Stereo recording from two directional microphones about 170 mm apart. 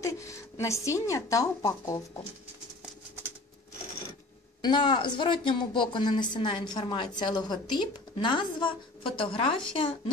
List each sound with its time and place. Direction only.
0.0 s speech: 15° left (ahead or behind)
4.6 s speech: 25° left (ahead or behind)